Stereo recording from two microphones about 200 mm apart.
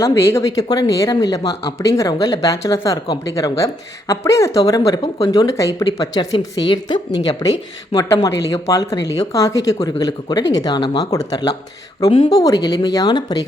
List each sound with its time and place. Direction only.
0.0 s speech: 15° left (ahead or behind)